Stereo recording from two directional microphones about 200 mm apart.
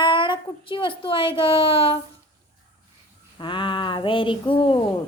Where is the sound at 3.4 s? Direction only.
25° left (ahead or behind).